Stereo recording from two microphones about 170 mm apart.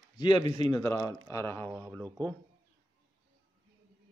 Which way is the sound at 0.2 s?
25° left (ahead or behind).